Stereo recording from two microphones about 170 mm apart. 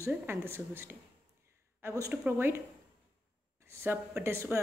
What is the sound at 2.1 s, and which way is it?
Speech, 10° right (ahead or behind).